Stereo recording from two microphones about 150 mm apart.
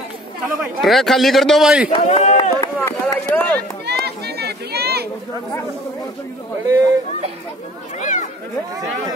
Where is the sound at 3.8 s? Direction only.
90° right.